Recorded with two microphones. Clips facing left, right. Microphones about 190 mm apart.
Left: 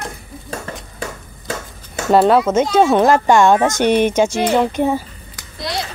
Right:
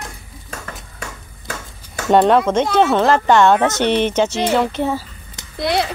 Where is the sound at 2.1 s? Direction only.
5° left (ahead or behind).